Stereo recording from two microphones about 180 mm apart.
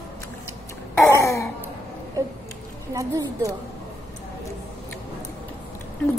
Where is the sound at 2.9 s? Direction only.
20° right (ahead or behind).